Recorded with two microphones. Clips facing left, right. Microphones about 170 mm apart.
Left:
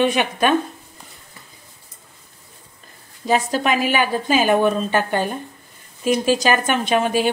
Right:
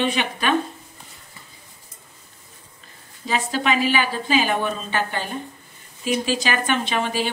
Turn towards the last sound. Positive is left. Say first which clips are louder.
# left 5 dB
turn(degrees=50)  # may be behind; listen again after turning